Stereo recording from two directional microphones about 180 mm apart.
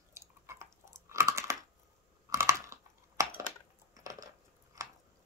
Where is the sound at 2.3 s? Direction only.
15° right (ahead or behind).